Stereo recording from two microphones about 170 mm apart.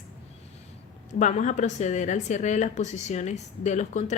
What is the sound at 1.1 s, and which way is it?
A woman's voice, 45° left (ahead or behind).